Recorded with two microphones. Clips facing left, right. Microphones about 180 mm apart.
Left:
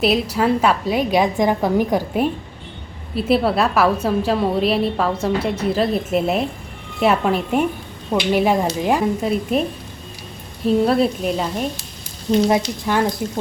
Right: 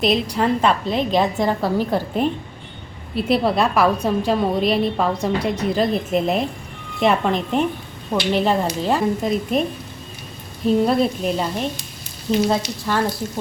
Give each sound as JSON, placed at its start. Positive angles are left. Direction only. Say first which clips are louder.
{"t": 0.0, "sound": "a woman's voice", "louder": "left 1 dB", "side_deg": 5}
{"t": 10.7, "sound": "a woman's voice", "louder": "left 1 dB", "side_deg": 0}
{"t": 12.5, "sound": "a woman's voice", "louder": "left 3 dB", "side_deg": 15}